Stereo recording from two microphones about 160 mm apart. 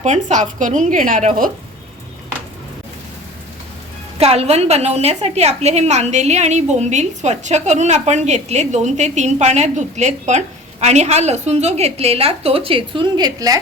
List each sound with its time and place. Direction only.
0.0 s a woman's voice: 50° right (ahead or behind)
4.2 s a woman's voice: 40° right (ahead or behind)